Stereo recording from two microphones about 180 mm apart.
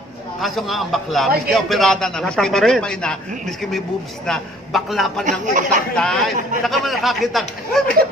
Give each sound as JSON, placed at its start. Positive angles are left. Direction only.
{"t": 0.4, "sound": "a man's voice", "side_deg": 0}
{"t": 5.4, "sound": "speech", "side_deg": -45}
{"t": 5.9, "sound": "a man's voice", "side_deg": 5}